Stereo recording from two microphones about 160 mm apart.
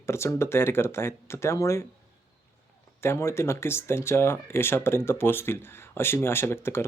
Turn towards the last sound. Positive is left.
turn(degrees=15)  # may be behind; listen again after turning